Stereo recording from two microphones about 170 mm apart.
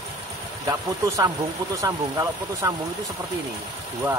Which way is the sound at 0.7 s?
20° right (ahead or behind).